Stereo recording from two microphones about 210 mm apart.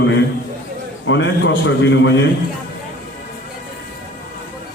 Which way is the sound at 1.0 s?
60° left (ahead or behind).